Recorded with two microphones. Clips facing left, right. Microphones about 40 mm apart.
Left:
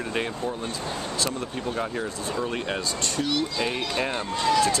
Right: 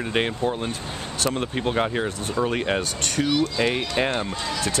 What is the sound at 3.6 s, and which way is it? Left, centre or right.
Speech, right.